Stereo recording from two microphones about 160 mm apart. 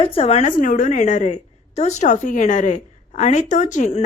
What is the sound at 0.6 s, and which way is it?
A woman's voice, 55° left (ahead or behind).